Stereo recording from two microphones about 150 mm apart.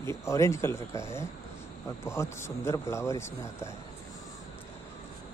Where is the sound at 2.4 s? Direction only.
20° left (ahead or behind).